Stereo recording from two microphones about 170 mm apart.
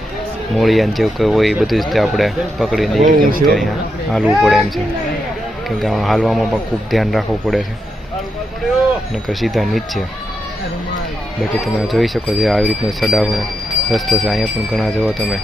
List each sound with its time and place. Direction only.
0.5 s speech: centre (ahead or behind)
3.0 s speech: 50° right (ahead or behind)
4.1 s speech: centre (ahead or behind)
5.6 s speech: centre (ahead or behind)
9.2 s speech: centre (ahead or behind)
11.6 s speech: centre (ahead or behind)